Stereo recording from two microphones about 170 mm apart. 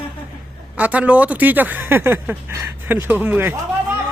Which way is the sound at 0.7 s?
10° right (ahead or behind).